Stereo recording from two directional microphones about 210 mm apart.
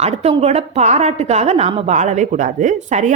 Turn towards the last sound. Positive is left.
turn(degrees=-35)  # may be behind; listen again after turning